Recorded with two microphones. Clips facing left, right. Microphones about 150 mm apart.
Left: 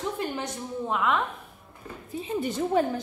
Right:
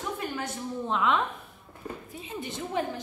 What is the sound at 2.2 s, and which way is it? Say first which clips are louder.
Speech: left 10 dB; 40° left (ahead or behind).